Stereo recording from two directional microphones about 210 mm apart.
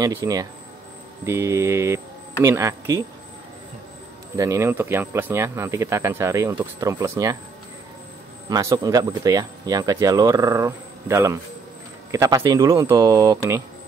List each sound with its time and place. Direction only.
0.0 s speech: 15° right (ahead or behind)
4.4 s speech: 15° right (ahead or behind)
8.5 s speech: 15° right (ahead or behind)